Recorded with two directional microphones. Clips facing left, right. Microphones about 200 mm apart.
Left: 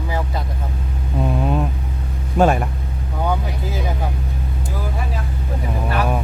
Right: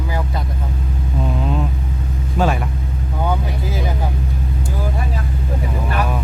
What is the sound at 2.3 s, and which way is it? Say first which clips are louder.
Speech: left 4 dB; 50° left (ahead or behind).